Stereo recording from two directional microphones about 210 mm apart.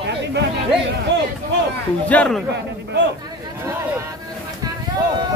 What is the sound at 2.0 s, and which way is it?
Speech, 5° left (ahead or behind).